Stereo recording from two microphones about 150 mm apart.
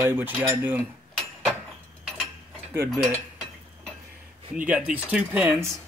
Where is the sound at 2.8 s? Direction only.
Centre (ahead or behind).